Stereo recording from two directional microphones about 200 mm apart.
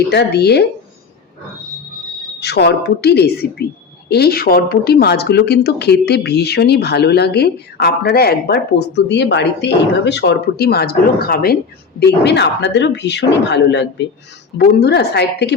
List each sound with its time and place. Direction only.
0.1 s speech: 55° left (ahead or behind)
2.4 s a woman's voice: 55° left (ahead or behind)